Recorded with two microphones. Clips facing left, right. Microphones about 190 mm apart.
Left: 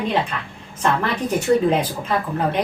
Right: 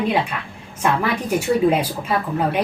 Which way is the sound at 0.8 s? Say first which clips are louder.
Even; 10° right (ahead or behind).